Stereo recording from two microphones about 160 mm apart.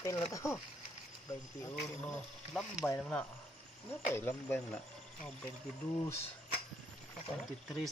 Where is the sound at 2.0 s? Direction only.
5° left (ahead or behind).